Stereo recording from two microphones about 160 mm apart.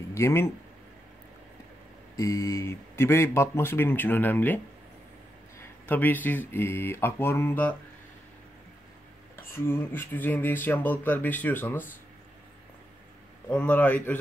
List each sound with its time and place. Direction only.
0.1 s speech: 15° left (ahead or behind)
2.1 s speech: 20° left (ahead or behind)
5.6 s speech: 10° left (ahead or behind)
9.4 s speech: 15° left (ahead or behind)
13.5 s speech: 10° left (ahead or behind)